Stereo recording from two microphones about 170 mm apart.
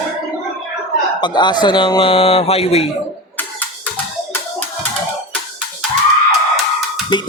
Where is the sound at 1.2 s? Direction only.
25° left (ahead or behind).